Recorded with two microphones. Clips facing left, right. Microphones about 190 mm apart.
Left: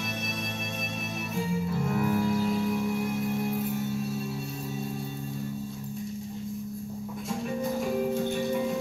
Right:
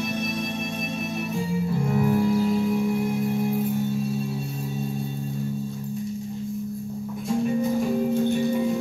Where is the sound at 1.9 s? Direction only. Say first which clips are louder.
Right 5 dB; 30° right (ahead or behind).